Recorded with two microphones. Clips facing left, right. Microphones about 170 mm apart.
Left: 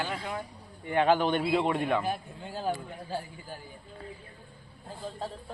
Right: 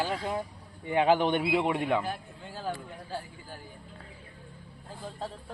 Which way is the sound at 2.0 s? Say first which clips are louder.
Left 3 dB; 15° left (ahead or behind).